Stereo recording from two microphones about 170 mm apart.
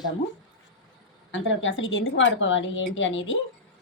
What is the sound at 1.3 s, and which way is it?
A woman's voice, 90° left.